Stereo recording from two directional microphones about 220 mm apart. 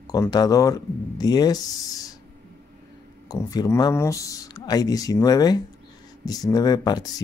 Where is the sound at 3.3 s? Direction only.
15° left (ahead or behind).